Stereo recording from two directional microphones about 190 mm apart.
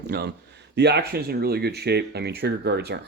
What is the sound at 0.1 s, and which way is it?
Speech, 60° right (ahead or behind).